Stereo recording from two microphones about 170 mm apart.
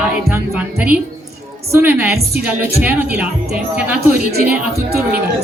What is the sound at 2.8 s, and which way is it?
Speech, 10° right (ahead or behind).